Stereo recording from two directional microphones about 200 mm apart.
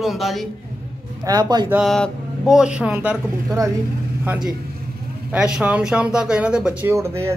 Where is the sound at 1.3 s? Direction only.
20° right (ahead or behind).